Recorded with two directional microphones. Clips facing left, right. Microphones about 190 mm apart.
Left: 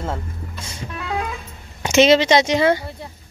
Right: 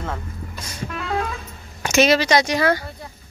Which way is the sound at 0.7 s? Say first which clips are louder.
Right 2 dB; 15° left (ahead or behind).